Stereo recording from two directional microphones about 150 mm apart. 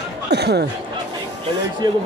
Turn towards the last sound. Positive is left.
turn(degrees=-90)